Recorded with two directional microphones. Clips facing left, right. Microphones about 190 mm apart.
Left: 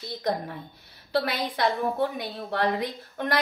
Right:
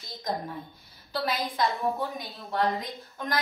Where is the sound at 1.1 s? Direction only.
70° left (ahead or behind).